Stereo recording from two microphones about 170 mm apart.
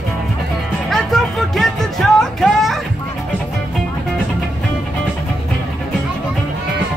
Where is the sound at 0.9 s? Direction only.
Centre (ahead or behind).